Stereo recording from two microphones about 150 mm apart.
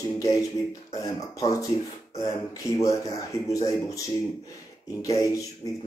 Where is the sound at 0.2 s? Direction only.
25° left (ahead or behind).